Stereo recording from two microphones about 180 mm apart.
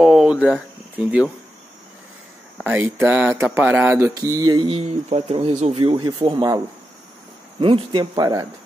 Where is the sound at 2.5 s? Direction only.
10° right (ahead or behind).